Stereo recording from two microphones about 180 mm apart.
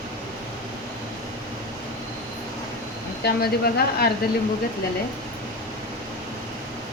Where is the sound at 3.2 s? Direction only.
60° left (ahead or behind).